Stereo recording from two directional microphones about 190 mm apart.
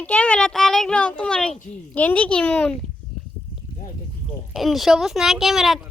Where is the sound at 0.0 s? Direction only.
5° left (ahead or behind).